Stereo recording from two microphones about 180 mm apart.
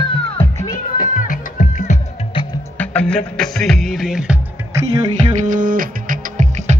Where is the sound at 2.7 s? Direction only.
5° left (ahead or behind).